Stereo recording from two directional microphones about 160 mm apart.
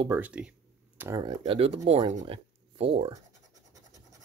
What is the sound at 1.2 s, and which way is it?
Speech, 30° right (ahead or behind).